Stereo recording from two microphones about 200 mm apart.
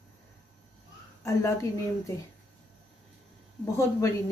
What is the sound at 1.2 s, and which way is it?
Speech, 15° left (ahead or behind).